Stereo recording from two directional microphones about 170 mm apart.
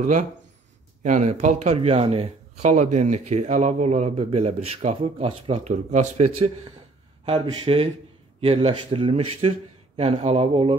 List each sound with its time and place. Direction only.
1.0 s speech: 45° right (ahead or behind)